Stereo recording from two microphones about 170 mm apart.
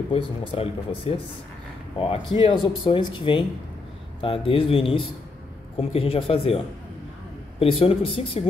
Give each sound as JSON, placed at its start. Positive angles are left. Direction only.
{"t": 0.1, "sound": "speech", "side_deg": 35}